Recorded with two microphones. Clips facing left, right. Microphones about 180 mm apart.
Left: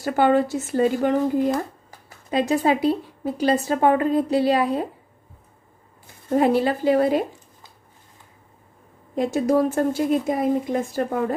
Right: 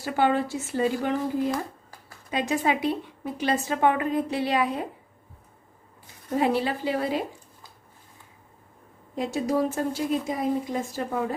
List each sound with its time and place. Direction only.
0.0 s speech: 45° left (ahead or behind)
2.3 s a woman's voice: 35° left (ahead or behind)
6.3 s speech: 50° left (ahead or behind)
9.1 s speech: 55° left (ahead or behind)